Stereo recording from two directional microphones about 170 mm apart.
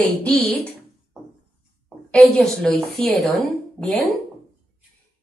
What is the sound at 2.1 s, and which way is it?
A woman's voice, 5° left (ahead or behind).